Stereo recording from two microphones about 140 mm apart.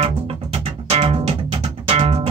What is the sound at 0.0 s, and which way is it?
Music, 45° right (ahead or behind).